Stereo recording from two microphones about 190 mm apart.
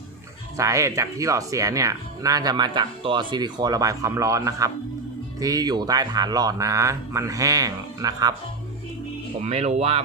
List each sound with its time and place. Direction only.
0.5 s speech: 15° right (ahead or behind)
9.4 s speech: 35° right (ahead or behind)